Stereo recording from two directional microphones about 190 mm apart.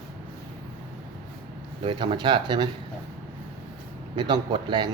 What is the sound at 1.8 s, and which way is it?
Speech, 25° right (ahead or behind).